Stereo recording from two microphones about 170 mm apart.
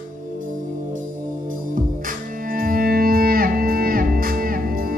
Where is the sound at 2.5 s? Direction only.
55° right (ahead or behind).